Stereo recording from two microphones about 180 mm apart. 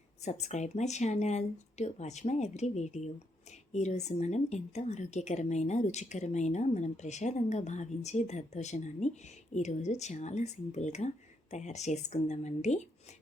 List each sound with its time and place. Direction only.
0.3 s speech: 40° left (ahead or behind)